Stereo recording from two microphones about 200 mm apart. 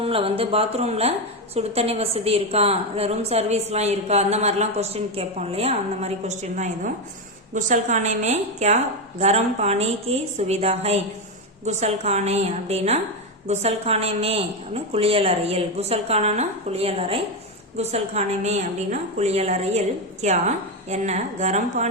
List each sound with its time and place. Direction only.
0.0 s a woman's voice: 30° right (ahead or behind)